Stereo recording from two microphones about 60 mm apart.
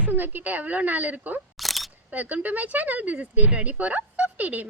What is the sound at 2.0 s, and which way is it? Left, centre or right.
Speech, right.